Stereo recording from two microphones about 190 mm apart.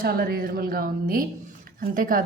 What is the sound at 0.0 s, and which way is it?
A woman's voice, 50° right (ahead or behind).